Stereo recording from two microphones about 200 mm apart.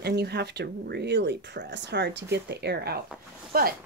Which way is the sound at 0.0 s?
55° right (ahead or behind).